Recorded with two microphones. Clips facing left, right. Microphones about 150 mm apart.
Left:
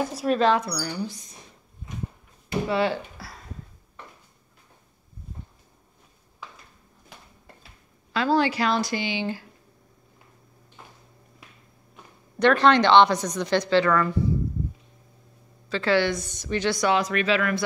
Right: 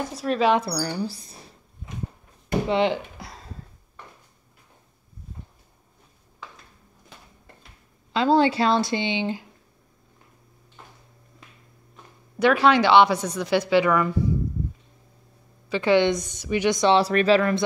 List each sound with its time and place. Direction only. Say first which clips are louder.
0.2 s speech: left 2 dB; 10° left (ahead or behind)
0.6 s speech: right 3 dB; 35° right (ahead or behind)
2.7 s a sound: right 2 dB; 20° right (ahead or behind)
8.1 s speech: right 3 dB; 25° right (ahead or behind)
12.4 s a woman's voice: even; 5° right (ahead or behind)
15.7 s a woman's voice: right 3 dB; 15° right (ahead or behind)